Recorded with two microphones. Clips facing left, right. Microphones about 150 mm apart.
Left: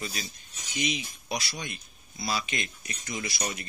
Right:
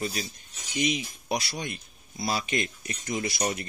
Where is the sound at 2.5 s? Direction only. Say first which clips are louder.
Right 6 dB; 40° right (ahead or behind).